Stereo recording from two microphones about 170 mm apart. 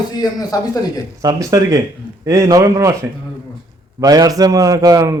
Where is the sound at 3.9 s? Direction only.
20° right (ahead or behind).